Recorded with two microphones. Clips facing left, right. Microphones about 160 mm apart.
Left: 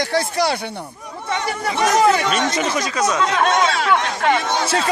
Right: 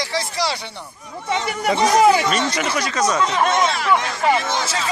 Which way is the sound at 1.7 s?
15° right (ahead or behind).